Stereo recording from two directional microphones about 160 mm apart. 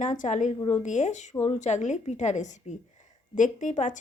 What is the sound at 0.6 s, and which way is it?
Speech, 20° left (ahead or behind).